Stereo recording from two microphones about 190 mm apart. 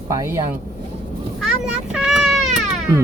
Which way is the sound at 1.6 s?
Centre (ahead or behind).